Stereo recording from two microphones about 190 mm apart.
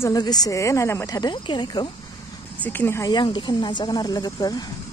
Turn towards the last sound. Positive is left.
turn(degrees=20)  # may be behind; listen again after turning